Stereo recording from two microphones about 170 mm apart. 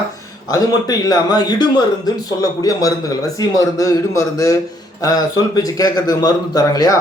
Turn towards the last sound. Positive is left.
turn(degrees=20)  # may be behind; listen again after turning